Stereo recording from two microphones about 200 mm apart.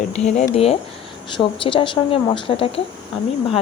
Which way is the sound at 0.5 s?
30° left (ahead or behind).